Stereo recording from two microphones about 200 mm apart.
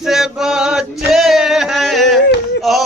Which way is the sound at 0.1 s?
Centre (ahead or behind).